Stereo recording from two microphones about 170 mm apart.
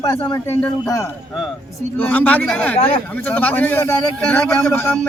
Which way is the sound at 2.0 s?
10° left (ahead or behind).